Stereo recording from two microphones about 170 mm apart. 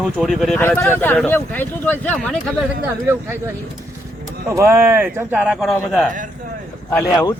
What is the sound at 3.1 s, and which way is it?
Speech, 15° right (ahead or behind).